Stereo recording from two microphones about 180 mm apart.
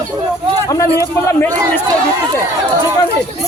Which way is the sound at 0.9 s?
15° left (ahead or behind).